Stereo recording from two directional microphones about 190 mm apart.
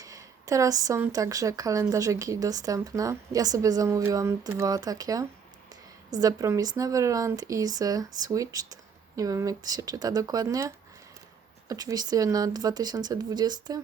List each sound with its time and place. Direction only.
0.0 s speech: 15° right (ahead or behind)
11.7 s speech: 20° right (ahead or behind)